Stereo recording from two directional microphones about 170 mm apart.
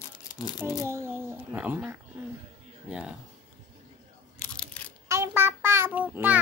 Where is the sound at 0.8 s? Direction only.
15° right (ahead or behind).